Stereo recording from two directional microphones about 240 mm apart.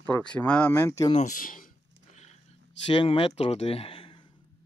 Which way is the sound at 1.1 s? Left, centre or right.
Left.